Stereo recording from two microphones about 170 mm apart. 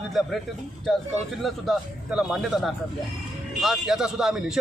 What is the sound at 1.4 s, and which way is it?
Speech, centre (ahead or behind).